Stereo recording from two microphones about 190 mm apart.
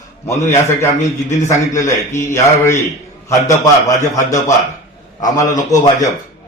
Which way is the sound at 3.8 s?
15° left (ahead or behind).